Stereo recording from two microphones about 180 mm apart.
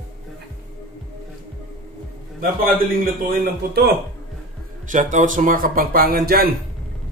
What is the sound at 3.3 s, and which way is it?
Speech, 60° right (ahead or behind).